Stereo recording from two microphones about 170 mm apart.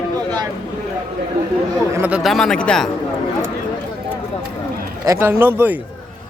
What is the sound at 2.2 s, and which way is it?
Speech, 5° left (ahead or behind).